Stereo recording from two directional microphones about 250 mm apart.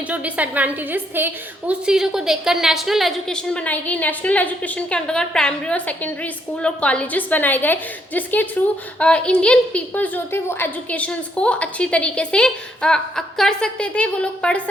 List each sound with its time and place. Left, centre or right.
0.1 s a woman's voice: centre